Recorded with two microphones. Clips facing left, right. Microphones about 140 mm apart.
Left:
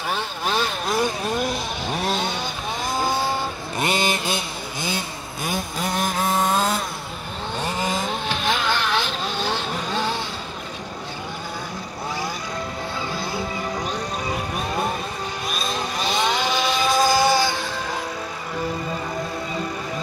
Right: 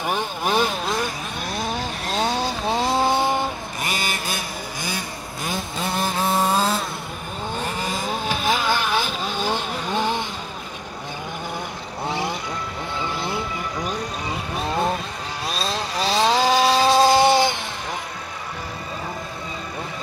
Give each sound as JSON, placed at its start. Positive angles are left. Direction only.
{"t": 0.1, "sound": "speech", "side_deg": -15}
{"t": 2.1, "sound": "vehicle", "side_deg": -35}
{"t": 3.8, "sound": "vehicle", "side_deg": 25}
{"t": 5.5, "sound": "vehicle", "side_deg": 0}
{"t": 8.5, "sound": "vehicle", "side_deg": -10}
{"t": 13.1, "sound": "music", "side_deg": -20}
{"t": 15.4, "sound": "vehicle", "side_deg": -30}